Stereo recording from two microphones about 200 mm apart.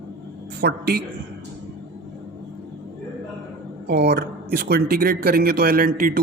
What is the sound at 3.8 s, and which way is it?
Speech, 55° right (ahead or behind).